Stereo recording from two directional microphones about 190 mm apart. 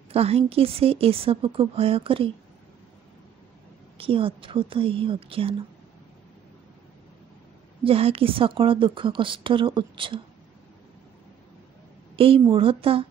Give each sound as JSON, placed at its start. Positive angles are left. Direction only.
{"t": 0.1, "sound": "a woman's voice", "side_deg": -30}
{"t": 4.0, "sound": "a woman's voice", "side_deg": -30}
{"t": 7.8, "sound": "a woman's voice", "side_deg": -30}
{"t": 12.2, "sound": "a woman's voice", "side_deg": -30}